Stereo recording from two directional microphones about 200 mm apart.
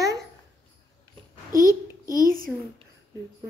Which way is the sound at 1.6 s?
15° left (ahead or behind).